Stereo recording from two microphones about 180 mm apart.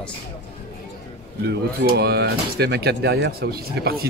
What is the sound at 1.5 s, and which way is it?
Speech, 65° right (ahead or behind).